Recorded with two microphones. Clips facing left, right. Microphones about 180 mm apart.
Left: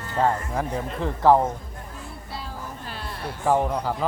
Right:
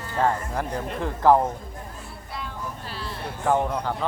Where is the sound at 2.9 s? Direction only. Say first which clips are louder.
Right 1 dB; 50° left (ahead or behind).